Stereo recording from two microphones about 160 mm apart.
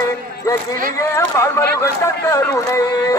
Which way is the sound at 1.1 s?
20° left (ahead or behind).